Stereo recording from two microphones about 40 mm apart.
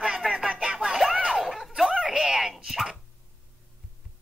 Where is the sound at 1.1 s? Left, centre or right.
Right.